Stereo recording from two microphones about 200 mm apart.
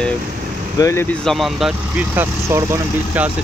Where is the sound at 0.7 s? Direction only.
15° left (ahead or behind).